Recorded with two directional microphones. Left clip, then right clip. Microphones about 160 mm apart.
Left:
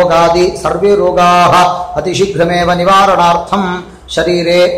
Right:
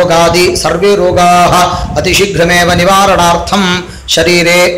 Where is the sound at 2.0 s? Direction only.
20° right (ahead or behind).